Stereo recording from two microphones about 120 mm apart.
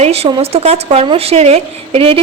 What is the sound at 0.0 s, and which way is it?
A woman's voice, 60° right (ahead or behind).